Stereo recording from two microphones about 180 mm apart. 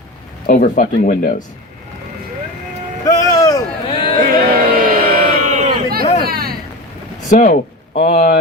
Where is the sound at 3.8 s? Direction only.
30° left (ahead or behind).